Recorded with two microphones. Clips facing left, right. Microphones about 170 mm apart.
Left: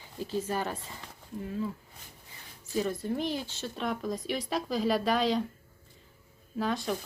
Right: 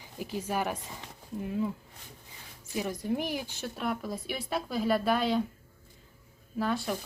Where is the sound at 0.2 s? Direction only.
15° right (ahead or behind).